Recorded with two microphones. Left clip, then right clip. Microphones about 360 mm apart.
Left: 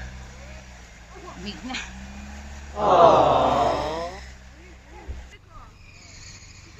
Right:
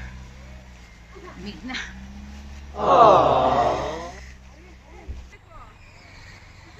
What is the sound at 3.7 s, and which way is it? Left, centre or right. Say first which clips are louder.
Wail: even; centre.